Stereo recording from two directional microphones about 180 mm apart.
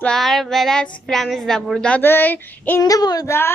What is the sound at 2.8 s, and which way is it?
Child singing, 20° left (ahead or behind).